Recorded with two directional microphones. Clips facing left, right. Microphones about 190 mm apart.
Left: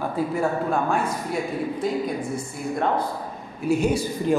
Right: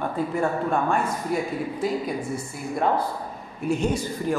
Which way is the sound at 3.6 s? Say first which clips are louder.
Left 3 dB; 10° left (ahead or behind).